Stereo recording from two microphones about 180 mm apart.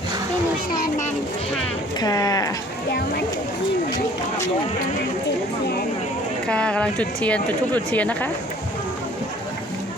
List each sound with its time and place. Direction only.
2.0 s speech: 20° left (ahead or behind)
6.5 s speech: 5° left (ahead or behind)